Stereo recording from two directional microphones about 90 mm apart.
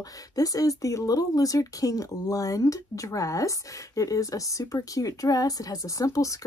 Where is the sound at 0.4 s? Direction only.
40° left (ahead or behind).